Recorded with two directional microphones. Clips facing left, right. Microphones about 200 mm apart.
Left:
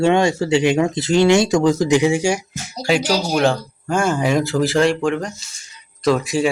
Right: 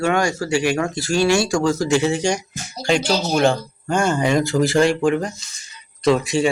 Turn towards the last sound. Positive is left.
turn(degrees=0)  # may be behind; listen again after turning